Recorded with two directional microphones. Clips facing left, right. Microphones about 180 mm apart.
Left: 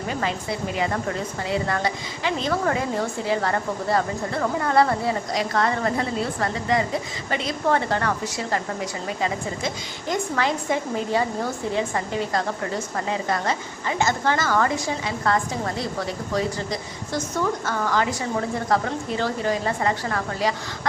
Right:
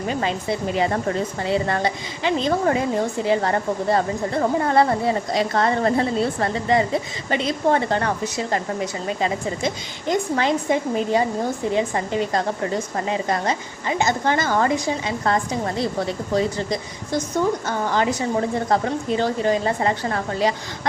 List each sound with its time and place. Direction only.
1.5 s a woman's voice: 25° right (ahead or behind)
17.7 s a woman's voice: 20° right (ahead or behind)